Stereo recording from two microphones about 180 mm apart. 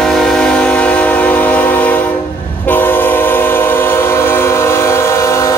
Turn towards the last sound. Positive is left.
turn(degrees=15)  # may be behind; listen again after turning